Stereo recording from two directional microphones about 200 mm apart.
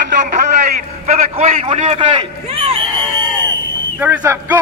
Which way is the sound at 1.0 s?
35° right (ahead or behind).